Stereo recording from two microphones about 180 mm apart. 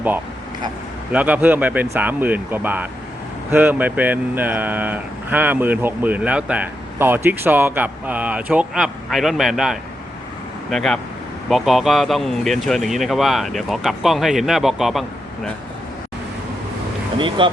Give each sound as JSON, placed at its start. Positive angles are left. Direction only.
{"t": 1.1, "sound": "speech", "side_deg": -10}
{"t": 17.2, "sound": "speech", "side_deg": -25}